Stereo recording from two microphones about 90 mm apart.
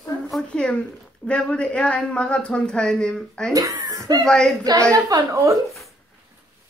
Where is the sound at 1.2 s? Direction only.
10° left (ahead or behind).